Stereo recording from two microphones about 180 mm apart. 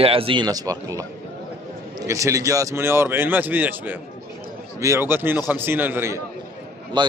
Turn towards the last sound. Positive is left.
turn(degrees=-25)  # may be behind; listen again after turning